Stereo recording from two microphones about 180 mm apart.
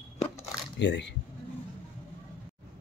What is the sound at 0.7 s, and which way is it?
Speech, 75° left (ahead or behind).